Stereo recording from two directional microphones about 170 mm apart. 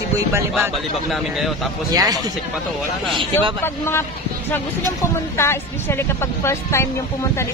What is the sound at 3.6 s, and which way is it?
Speech, 15° left (ahead or behind).